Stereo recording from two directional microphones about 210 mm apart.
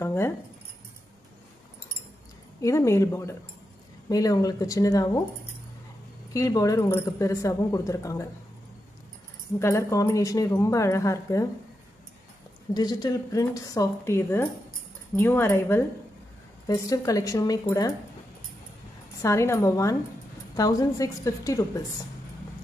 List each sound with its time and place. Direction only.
0.0 s keys jangling: 10° left (ahead or behind)
2.6 s speech: 15° left (ahead or behind)
6.3 s speech: 15° left (ahead or behind)
9.6 s speech: 15° left (ahead or behind)
12.7 s speech: 20° left (ahead or behind)
19.2 s speech: 15° left (ahead or behind)